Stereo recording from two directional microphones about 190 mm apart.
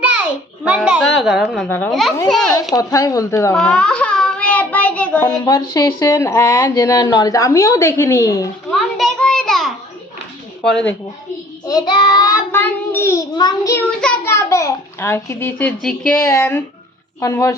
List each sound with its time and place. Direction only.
0.6 s a child's voice: 5° right (ahead or behind)
2.7 s speech: 15° left (ahead or behind)
3.6 s child singing: 5° left (ahead or behind)
5.2 s speech: 20° left (ahead or behind)
8.7 s a sound: centre (ahead or behind)
10.6 s a child's voice: 5° left (ahead or behind)
11.6 s child singing: 20° left (ahead or behind)
14.0 s speech: 15° left (ahead or behind)